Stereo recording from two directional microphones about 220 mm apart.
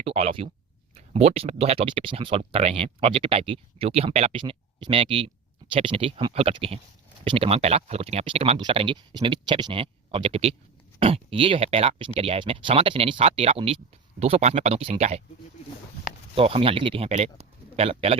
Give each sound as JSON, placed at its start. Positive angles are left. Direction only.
{"t": 0.0, "sound": "speech", "side_deg": -25}
{"t": 16.3, "sound": "a man's voice", "side_deg": -25}